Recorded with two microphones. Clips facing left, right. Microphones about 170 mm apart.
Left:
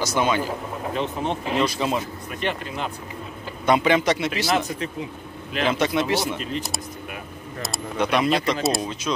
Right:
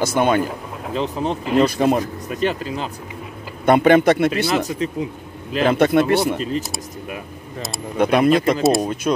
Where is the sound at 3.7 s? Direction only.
55° right (ahead or behind).